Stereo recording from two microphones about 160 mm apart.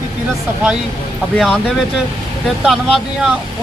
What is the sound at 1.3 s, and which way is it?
Speech, 5° left (ahead or behind).